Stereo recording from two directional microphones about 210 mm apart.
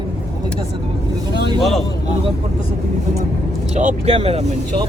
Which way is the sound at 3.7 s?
35° right (ahead or behind).